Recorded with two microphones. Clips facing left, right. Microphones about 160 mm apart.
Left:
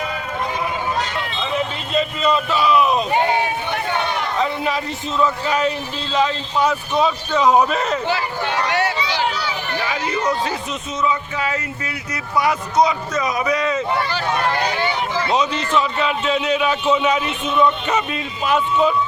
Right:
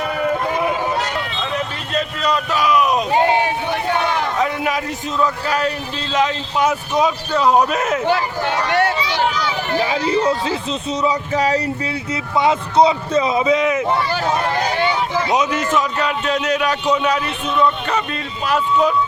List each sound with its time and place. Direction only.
1.4 s a sound: centre (ahead or behind)
7.0 s a man's voice: 10° right (ahead or behind)
8.7 s run: 55° right (ahead or behind)
9.8 s speech: 30° right (ahead or behind)
12.1 s a man's voice: 25° right (ahead or behind)
15.3 s a man's voice: 10° right (ahead or behind)